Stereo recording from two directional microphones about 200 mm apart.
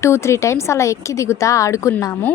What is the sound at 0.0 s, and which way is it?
A woman's voice, 15° left (ahead or behind).